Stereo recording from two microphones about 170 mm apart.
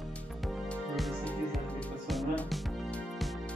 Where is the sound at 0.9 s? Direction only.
Centre (ahead or behind).